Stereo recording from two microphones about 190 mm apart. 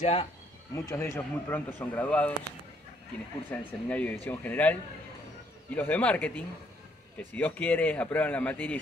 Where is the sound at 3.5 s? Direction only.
10° left (ahead or behind).